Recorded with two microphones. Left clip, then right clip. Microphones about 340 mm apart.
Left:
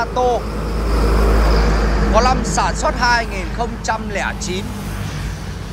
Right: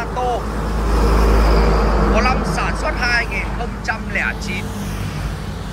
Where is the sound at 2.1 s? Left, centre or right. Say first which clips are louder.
Left 3 dB; centre.